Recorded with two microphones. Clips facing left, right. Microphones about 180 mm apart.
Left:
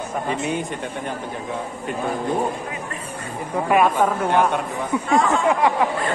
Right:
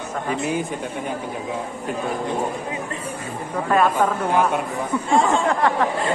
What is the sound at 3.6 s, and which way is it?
Speech, 10° left (ahead or behind).